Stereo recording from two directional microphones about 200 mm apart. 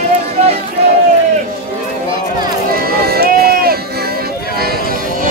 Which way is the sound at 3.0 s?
50° right (ahead or behind).